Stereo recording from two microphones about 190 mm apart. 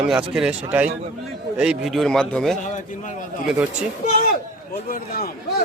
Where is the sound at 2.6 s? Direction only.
40° left (ahead or behind).